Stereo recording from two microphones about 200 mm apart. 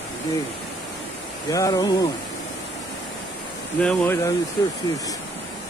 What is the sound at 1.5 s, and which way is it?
Speech, 15° left (ahead or behind).